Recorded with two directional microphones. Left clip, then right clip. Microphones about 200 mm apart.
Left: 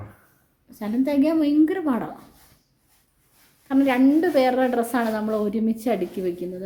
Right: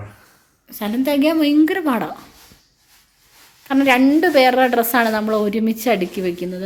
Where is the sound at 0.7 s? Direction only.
5° right (ahead or behind).